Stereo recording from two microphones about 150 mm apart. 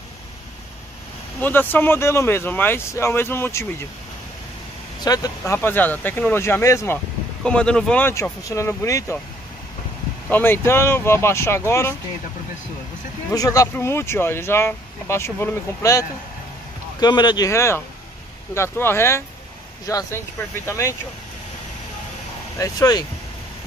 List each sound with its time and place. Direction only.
1.4 s speech: 15° left (ahead or behind)
5.0 s speech: 25° left (ahead or behind)
7.4 s speech: 5° left (ahead or behind)
8.1 s speech: 20° left (ahead or behind)
10.3 s speech: 15° left (ahead or behind)
13.3 s speech: 25° left (ahead or behind)
22.6 s speech: 25° left (ahead or behind)